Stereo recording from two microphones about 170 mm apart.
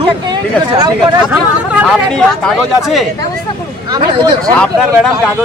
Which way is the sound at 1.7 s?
10° right (ahead or behind).